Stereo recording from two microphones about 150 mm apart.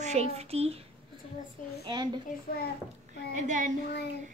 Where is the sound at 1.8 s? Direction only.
30° right (ahead or behind).